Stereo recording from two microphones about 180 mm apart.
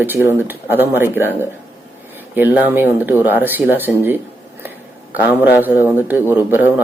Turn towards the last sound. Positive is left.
turn(degrees=-10)  # may be behind; listen again after turning